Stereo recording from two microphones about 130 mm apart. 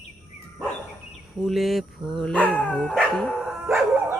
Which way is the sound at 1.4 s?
Centre (ahead or behind).